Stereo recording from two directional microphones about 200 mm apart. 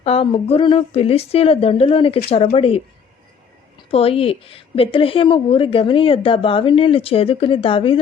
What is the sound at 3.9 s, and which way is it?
A woman's voice, 30° left (ahead or behind).